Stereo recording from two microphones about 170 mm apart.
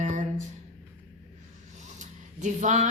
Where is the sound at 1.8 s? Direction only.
45° right (ahead or behind).